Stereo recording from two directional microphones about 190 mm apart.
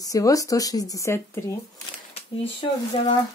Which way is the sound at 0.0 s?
20° left (ahead or behind).